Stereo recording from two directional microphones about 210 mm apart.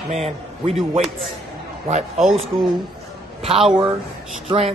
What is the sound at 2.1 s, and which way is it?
Speech, centre (ahead or behind).